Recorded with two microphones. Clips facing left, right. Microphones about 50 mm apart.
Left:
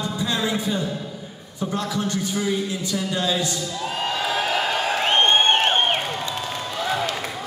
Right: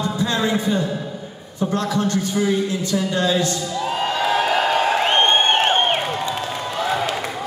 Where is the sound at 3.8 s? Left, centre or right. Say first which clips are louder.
Right 4 dB; centre.